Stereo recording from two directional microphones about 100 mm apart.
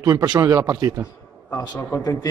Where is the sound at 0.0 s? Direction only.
45° right (ahead or behind).